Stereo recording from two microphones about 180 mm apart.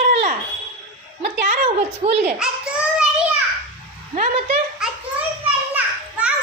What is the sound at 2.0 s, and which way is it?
Speech, 30° right (ahead or behind).